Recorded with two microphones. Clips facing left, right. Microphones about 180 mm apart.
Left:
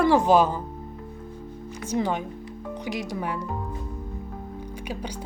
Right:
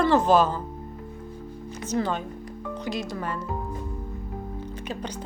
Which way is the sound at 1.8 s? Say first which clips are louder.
Left 1 dB; 15° left (ahead or behind).